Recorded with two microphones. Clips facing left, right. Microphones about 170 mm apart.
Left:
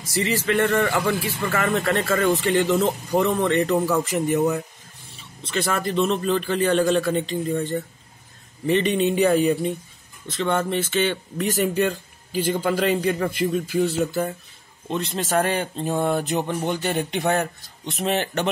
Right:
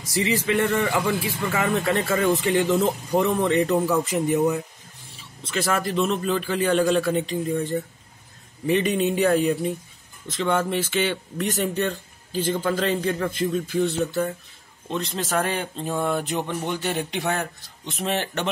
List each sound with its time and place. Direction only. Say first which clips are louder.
0.1 s a man's voice: even; 15° right (ahead or behind)
3.7 s speech: even; 5° right (ahead or behind)
4.0 s a man's voice: even; 15° right (ahead or behind)
5.5 s a man's voice: even; centre (ahead or behind)
10.2 s a man's voice: even; 10° right (ahead or behind)
11.3 s a man's voice: left 4 dB; 5° left (ahead or behind)
15.9 s a sound: left 2 dB; 30° left (ahead or behind)
16.7 s speech: left 2 dB; centre (ahead or behind)